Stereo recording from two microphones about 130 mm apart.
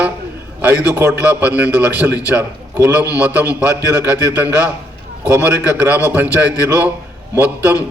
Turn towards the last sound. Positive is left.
turn(degrees=-15)  # may be behind; listen again after turning